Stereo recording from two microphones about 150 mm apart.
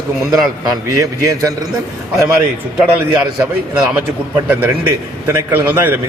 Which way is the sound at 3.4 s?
5° right (ahead or behind).